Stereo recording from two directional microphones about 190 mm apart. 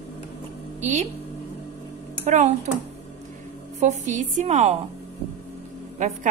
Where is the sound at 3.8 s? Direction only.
40° right (ahead or behind).